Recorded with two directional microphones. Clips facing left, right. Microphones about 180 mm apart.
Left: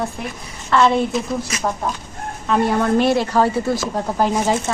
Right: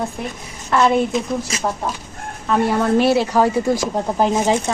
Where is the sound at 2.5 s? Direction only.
5° right (ahead or behind).